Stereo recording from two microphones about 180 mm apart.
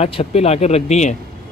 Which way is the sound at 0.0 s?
35° left (ahead or behind).